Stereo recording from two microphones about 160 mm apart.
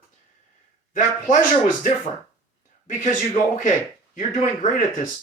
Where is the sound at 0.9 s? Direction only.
50° left (ahead or behind).